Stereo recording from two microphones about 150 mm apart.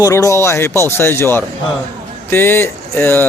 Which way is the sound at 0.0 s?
20° left (ahead or behind).